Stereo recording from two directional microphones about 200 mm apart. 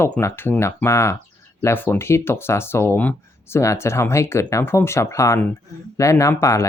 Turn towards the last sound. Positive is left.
turn(degrees=15)  # may be behind; listen again after turning